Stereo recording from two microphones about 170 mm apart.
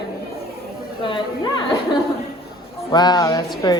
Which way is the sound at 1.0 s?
25° left (ahead or behind).